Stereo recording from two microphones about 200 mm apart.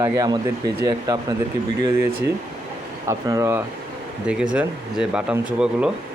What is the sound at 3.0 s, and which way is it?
Speech, 15° right (ahead or behind).